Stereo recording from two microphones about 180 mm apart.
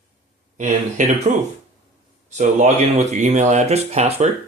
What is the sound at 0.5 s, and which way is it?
Speech, 45° right (ahead or behind).